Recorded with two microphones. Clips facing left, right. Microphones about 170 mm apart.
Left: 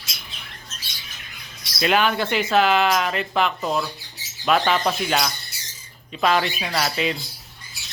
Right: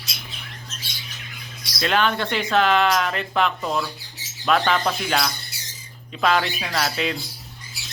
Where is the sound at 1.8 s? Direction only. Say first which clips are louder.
Left 1 dB; 10° left (ahead or behind).